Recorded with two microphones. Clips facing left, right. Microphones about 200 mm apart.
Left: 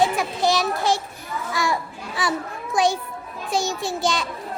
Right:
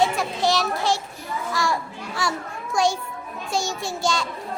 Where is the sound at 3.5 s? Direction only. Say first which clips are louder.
Left 3 dB; centre (ahead or behind).